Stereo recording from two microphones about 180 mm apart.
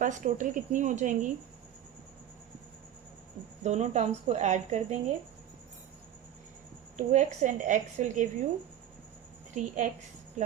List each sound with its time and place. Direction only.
0.0 s speech: 45° right (ahead or behind)
3.6 s a woman's voice: 40° right (ahead or behind)
6.9 s speech: 40° right (ahead or behind)
9.6 s speech: 45° right (ahead or behind)